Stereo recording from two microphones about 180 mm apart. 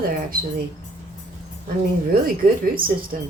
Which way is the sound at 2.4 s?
50° right (ahead or behind).